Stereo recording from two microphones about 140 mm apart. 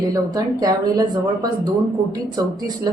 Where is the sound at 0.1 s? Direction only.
25° right (ahead or behind).